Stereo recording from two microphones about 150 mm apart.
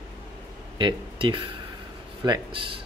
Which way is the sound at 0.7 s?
30° right (ahead or behind).